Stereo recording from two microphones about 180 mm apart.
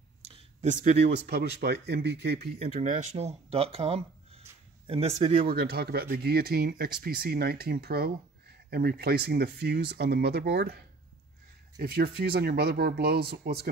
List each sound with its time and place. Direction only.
0.3 s a sound: 40° right (ahead or behind)
1.2 s speech: 60° right (ahead or behind)
2.6 s speech: 40° right (ahead or behind)
5.5 s speech: 60° right (ahead or behind)
11.8 s speech: 60° right (ahead or behind)